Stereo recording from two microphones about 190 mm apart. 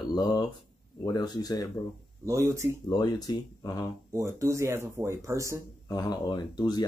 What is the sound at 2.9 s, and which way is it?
Speech, 20° left (ahead or behind).